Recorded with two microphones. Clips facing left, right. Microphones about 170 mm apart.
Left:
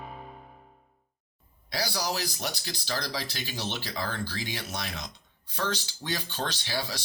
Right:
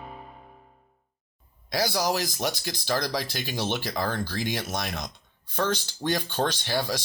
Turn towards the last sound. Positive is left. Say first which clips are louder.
# right 6 dB
turn(degrees=-50)  # may be behind; listen again after turning